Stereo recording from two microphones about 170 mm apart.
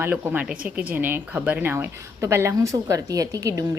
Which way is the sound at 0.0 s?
10° right (ahead or behind).